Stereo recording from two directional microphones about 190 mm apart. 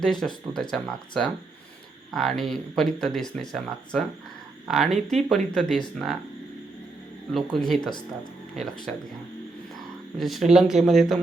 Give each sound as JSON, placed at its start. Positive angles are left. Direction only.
{"t": 0.0, "sound": "speech", "side_deg": 5}
{"t": 7.3, "sound": "speech", "side_deg": 0}
{"t": 7.8, "sound": "speech", "side_deg": 25}
{"t": 10.2, "sound": "speech", "side_deg": 0}